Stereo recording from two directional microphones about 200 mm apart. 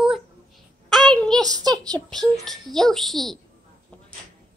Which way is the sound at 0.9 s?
5° left (ahead or behind).